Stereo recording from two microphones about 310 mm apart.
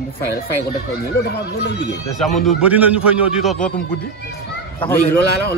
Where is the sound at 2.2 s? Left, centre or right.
Centre.